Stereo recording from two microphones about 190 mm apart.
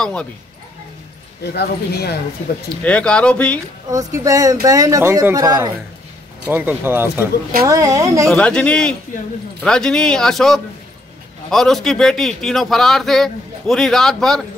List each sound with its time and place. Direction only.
0.0 s a man's voice: 5° left (ahead or behind)
1.4 s speech: 60° left (ahead or behind)
2.8 s speech: 5° left (ahead or behind)
3.9 s speech: 20° right (ahead or behind)
8.3 s a man's voice: 5° left (ahead or behind)